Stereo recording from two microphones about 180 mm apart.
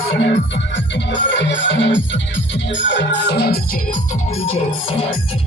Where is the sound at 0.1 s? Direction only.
75° left (ahead or behind); by 4.9 s 35° left (ahead or behind).